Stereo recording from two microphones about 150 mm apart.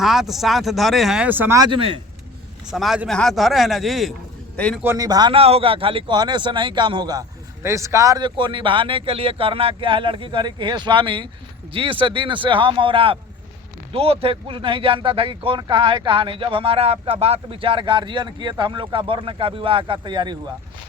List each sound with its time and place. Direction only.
0.0 s speech: centre (ahead or behind)
1.5 s speech: 30° right (ahead or behind)
2.6 s a man's voice: centre (ahead or behind)
4.9 s speech: 25° right (ahead or behind)